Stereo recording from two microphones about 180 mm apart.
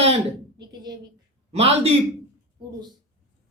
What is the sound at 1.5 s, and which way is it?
Speech, 35° right (ahead or behind).